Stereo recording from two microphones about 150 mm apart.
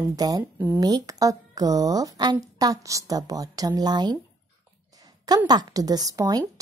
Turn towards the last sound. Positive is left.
turn(degrees=-25)  # may be behind; listen again after turning